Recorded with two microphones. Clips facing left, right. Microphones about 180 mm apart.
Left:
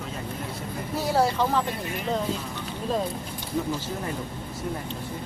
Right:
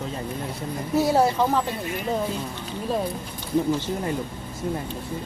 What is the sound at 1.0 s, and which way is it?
Speech, 15° right (ahead or behind).